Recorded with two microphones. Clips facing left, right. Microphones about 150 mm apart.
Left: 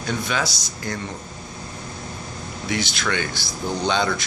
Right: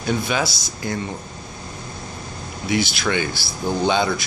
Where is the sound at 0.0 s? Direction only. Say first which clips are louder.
Right 3 dB; 15° right (ahead or behind).